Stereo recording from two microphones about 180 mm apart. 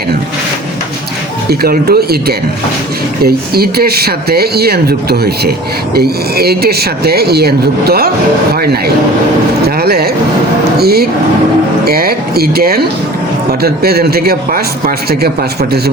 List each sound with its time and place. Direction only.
1.5 s speech: 55° right (ahead or behind)